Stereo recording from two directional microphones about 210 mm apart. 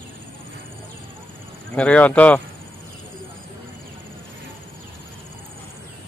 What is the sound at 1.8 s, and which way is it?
Speech, 5° left (ahead or behind).